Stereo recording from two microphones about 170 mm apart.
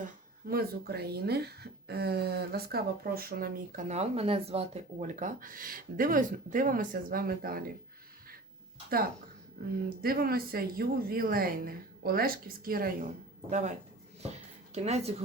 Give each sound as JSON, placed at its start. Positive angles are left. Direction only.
{"t": 0.0, "sound": "speech", "side_deg": -65}
{"t": 10.0, "sound": "speech", "side_deg": -60}
{"t": 13.5, "sound": "speech", "side_deg": -45}
{"t": 14.2, "sound": "a sound", "side_deg": -40}